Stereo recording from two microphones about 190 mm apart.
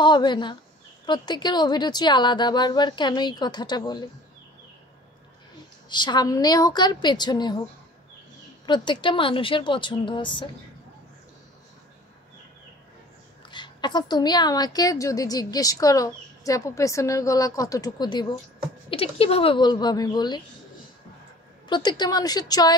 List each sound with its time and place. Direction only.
0.0 s a woman's voice: 25° left (ahead or behind)
5.9 s a woman's voice: 25° left (ahead or behind)
8.6 s a woman's voice: 25° left (ahead or behind)
13.5 s a woman's voice: 25° left (ahead or behind)
21.6 s a woman's voice: 25° left (ahead or behind)